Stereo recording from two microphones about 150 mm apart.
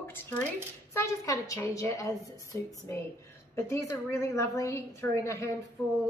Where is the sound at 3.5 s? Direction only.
20° left (ahead or behind).